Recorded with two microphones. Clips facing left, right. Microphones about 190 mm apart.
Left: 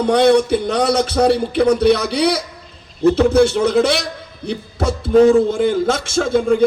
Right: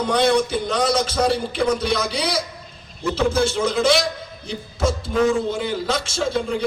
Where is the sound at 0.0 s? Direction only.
60° left (ahead or behind).